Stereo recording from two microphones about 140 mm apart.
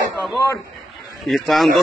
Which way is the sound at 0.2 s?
20° left (ahead or behind).